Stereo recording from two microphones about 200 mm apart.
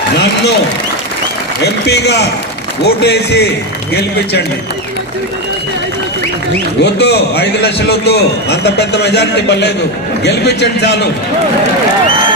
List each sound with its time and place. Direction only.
1.6 s a man's voice: 55° left (ahead or behind)
6.8 s a man's voice: 55° left (ahead or behind)